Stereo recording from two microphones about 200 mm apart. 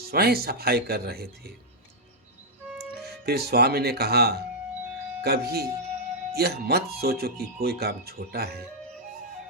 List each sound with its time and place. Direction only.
0.1 s speech: 50° right (ahead or behind)
2.9 s speech: 55° right (ahead or behind)